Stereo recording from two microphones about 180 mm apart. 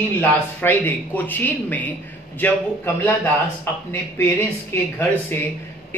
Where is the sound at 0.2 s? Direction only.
10° left (ahead or behind).